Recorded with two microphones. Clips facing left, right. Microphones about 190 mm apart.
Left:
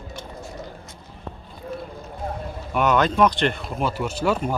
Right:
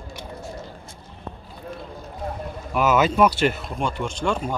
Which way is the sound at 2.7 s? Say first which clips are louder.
Right 1 dB; 5° right (ahead or behind).